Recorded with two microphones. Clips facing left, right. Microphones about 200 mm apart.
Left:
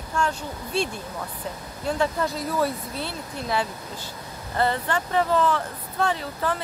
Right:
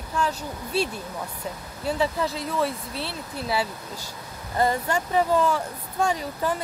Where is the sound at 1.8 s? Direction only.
5° right (ahead or behind).